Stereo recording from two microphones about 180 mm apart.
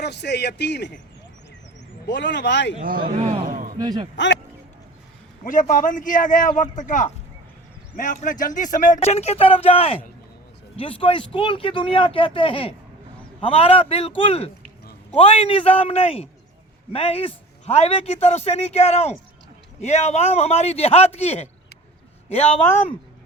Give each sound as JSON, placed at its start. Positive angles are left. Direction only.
{"t": 0.0, "sound": "a man's voice", "side_deg": 65}
{"t": 2.0, "sound": "speech", "side_deg": 80}
{"t": 2.8, "sound": "speech", "side_deg": -50}
{"t": 3.2, "sound": "a man's voice", "side_deg": -40}
{"t": 3.8, "sound": "a man's voice", "side_deg": -20}
{"t": 5.4, "sound": "a man's voice", "side_deg": 45}